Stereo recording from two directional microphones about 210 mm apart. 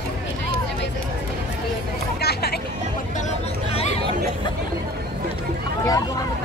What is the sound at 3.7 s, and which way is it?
Chatter, 30° left (ahead or behind).